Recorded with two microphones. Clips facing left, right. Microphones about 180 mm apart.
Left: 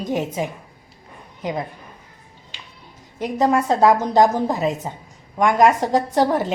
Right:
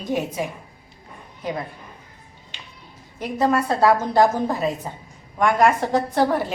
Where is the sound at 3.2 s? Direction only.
15° left (ahead or behind).